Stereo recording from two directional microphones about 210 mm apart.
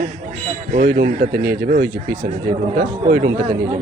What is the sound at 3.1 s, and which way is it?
Speech, 45° right (ahead or behind).